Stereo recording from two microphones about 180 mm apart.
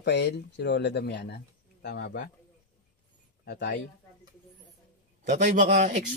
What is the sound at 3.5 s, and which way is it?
Speech, 70° left (ahead or behind).